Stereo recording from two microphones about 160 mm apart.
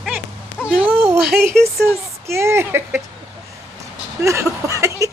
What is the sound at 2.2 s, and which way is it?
Speech, 15° right (ahead or behind).